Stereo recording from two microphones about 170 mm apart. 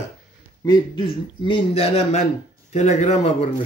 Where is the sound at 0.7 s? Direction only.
25° left (ahead or behind).